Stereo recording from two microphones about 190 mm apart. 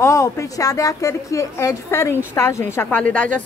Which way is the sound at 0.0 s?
15° left (ahead or behind).